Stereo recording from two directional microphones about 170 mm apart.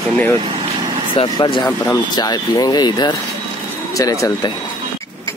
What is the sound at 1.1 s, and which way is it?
Speech, 30° left (ahead or behind).